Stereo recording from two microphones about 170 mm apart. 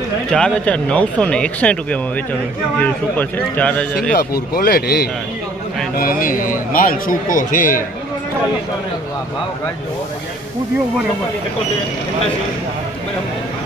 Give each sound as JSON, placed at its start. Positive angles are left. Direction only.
{"t": 0.3, "sound": "speech", "side_deg": 5}
{"t": 4.6, "sound": "a man's voice", "side_deg": 65}
{"t": 5.9, "sound": "a man's voice", "side_deg": 55}